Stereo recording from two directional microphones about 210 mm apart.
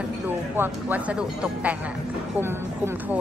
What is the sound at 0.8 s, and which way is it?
Speech, 5° right (ahead or behind).